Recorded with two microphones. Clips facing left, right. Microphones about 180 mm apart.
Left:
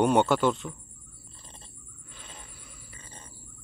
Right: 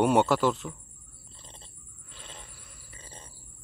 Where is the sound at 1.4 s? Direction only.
20° right (ahead or behind).